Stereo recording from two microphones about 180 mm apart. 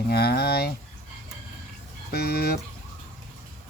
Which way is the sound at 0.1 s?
65° left (ahead or behind).